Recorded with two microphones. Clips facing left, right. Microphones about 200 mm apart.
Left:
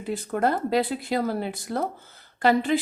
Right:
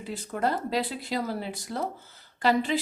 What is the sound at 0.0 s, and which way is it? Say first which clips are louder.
A woman's voice: left 4 dB; 55° left (ahead or behind).